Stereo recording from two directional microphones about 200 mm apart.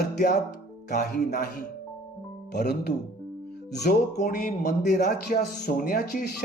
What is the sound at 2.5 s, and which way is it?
Speech, 55° left (ahead or behind).